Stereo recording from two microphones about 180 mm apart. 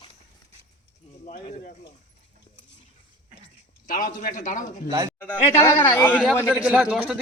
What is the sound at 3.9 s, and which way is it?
A man's voice, 45° left (ahead or behind).